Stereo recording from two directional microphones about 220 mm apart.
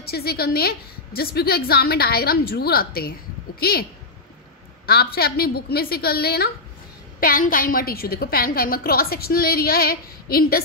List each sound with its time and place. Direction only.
0.0 s a woman's voice: 45° left (ahead or behind)
4.8 s a woman's voice: 45° left (ahead or behind)